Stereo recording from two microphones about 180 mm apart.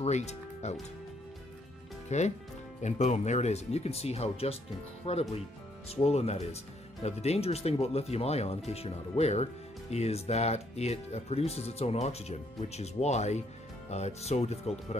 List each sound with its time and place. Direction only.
0.0 s speech: 40° left (ahead or behind)
2.0 s speech: 40° left (ahead or behind)